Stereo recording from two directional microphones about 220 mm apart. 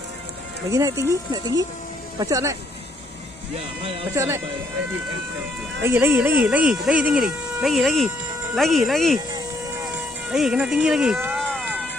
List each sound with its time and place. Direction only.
0.7 s speech: 15° right (ahead or behind)
3.8 s speech: 25° right (ahead or behind)
4.1 s speech: 10° right (ahead or behind)
5.8 s speech: 10° right (ahead or behind)
10.3 s speech: 5° right (ahead or behind)
11.3 s a sound: centre (ahead or behind)